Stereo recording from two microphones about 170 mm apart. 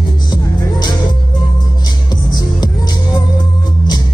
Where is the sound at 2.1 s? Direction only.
25° left (ahead or behind).